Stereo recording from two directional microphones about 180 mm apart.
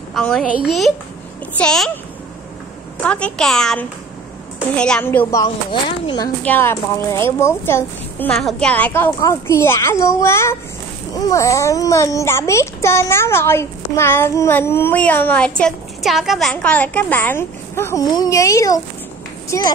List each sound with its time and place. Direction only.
0.1 s a woman's voice: centre (ahead or behind)
3.0 s a woman's voice: 5° left (ahead or behind)
5.3 s speech: 25° left (ahead or behind)
6.4 s a child's voice: 10° left (ahead or behind)